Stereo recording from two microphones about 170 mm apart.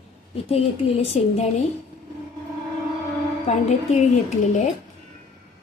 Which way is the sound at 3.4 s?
40° left (ahead or behind).